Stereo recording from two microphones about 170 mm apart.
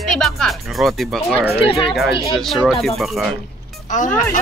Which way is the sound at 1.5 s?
35° left (ahead or behind).